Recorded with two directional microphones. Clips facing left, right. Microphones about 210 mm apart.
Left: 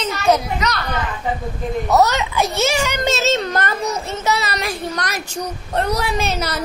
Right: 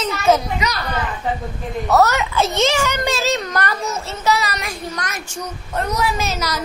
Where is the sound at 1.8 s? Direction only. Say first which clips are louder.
Right 1 dB; 15° left (ahead or behind).